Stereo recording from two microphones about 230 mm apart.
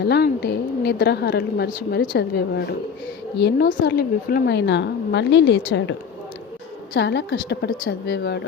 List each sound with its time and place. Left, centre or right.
0.0 s a woman's voice: left